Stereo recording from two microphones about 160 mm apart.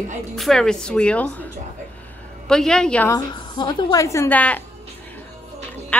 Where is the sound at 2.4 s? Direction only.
5° left (ahead or behind).